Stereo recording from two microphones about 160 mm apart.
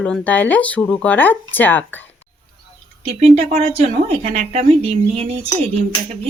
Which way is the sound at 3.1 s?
40° right (ahead or behind).